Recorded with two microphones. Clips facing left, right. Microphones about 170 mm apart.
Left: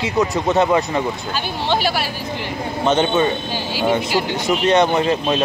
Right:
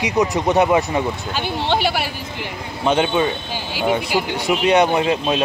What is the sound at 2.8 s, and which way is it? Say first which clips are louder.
Speech: left 1 dB; 5° right (ahead or behind).